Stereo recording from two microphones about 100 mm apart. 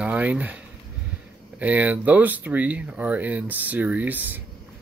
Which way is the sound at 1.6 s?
15° right (ahead or behind).